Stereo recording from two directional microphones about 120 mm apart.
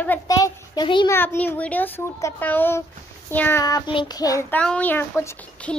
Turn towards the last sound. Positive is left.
turn(degrees=10)  # may be behind; listen again after turning